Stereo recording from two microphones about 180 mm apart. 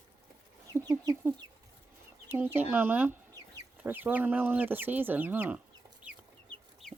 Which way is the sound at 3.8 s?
10° right (ahead or behind).